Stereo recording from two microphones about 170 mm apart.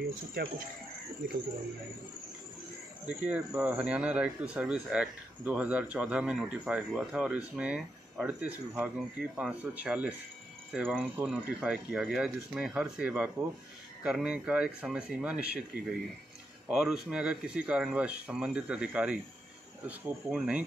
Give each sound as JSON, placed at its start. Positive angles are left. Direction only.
{"t": 0.0, "sound": "speech", "side_deg": -60}
{"t": 3.1, "sound": "speech", "side_deg": -10}